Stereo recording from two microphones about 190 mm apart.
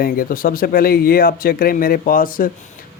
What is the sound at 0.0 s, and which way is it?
Speech, 45° left (ahead or behind).